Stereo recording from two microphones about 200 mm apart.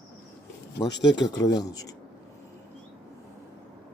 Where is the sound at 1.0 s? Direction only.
20° left (ahead or behind).